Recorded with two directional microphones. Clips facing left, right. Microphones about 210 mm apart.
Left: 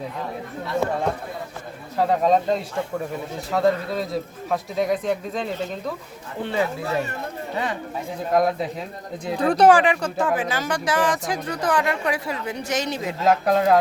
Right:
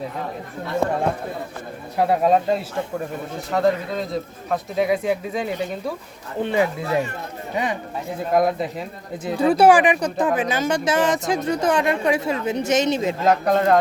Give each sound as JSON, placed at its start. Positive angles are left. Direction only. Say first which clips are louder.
{"t": 2.0, "sound": "speech", "louder": "right 1 dB", "side_deg": -10}
{"t": 8.3, "sound": "speech", "louder": "right 1 dB", "side_deg": 0}
{"t": 13.2, "sound": "speech", "louder": "even", "side_deg": 5}